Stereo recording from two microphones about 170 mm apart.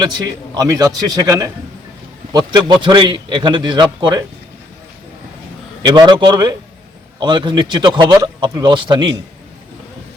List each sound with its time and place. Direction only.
0.5 s a man's voice: 20° right (ahead or behind)
5.8 s a man's voice: 25° right (ahead or behind)